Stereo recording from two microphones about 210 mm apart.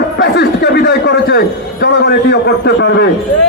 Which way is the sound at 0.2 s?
50° left (ahead or behind).